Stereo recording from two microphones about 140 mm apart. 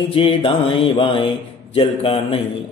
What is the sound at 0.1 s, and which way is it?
Mantra, 40° left (ahead or behind).